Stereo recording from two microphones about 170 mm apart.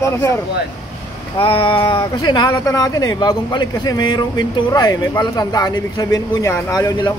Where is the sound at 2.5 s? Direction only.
20° left (ahead or behind).